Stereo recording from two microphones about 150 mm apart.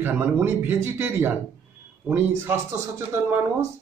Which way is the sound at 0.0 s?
15° right (ahead or behind).